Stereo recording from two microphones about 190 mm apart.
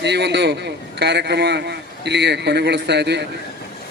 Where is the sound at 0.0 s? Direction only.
65° right (ahead or behind).